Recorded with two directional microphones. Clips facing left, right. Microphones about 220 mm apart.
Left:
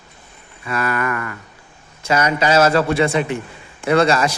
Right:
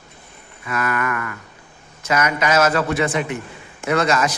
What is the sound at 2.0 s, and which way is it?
A man's voice, 30° left (ahead or behind).